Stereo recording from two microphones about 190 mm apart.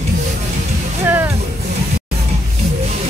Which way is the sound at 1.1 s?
10° right (ahead or behind).